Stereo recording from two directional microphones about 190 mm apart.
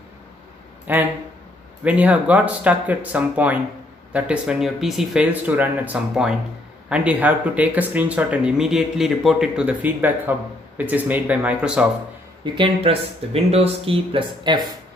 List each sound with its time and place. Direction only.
0.9 s speech: 10° right (ahead or behind)
12.5 s speech: 30° right (ahead or behind)